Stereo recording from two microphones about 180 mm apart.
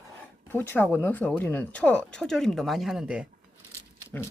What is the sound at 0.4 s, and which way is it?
Speech, 10° left (ahead or behind).